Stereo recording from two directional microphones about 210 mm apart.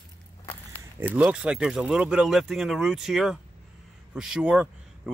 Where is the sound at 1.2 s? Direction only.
5° right (ahead or behind).